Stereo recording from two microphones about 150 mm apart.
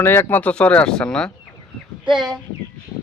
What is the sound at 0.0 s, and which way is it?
Speech, 15° left (ahead or behind).